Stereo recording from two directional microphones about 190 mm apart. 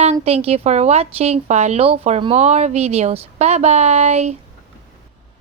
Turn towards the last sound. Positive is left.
turn(degrees=-35)  # may be behind; listen again after turning